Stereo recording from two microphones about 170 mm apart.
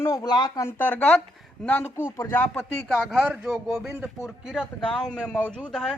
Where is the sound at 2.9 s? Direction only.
5° right (ahead or behind).